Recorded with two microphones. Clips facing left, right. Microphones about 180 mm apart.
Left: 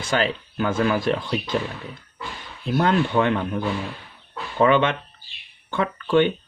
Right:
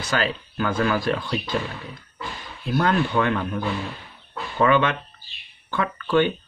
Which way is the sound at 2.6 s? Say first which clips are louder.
Left 1 dB; 20° left (ahead or behind).